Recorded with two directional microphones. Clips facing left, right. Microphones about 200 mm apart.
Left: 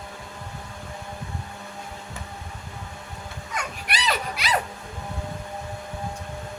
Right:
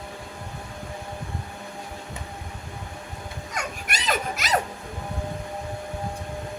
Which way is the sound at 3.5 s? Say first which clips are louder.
Left 1 dB; 45° right (ahead or behind).